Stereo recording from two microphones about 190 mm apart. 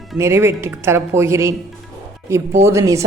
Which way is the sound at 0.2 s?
15° right (ahead or behind).